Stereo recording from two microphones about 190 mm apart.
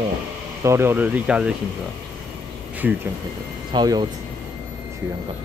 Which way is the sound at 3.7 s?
20° right (ahead or behind).